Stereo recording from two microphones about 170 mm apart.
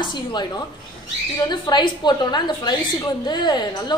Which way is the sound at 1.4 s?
25° left (ahead or behind).